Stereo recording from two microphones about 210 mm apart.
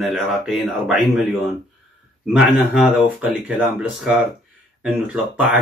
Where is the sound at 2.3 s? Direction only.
5° right (ahead or behind).